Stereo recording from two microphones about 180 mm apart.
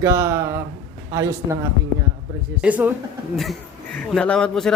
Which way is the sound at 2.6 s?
10° right (ahead or behind).